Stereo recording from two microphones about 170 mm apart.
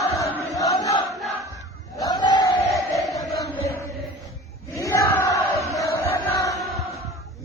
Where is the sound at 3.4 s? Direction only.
15° left (ahead or behind).